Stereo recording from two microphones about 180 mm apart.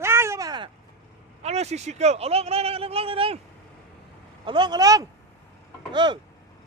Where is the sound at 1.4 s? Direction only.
35° right (ahead or behind).